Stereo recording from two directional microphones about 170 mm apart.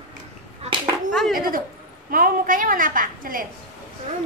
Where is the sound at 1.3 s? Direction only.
55° right (ahead or behind).